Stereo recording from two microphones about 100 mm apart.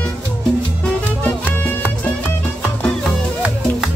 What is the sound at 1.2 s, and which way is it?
Music, 15° left (ahead or behind).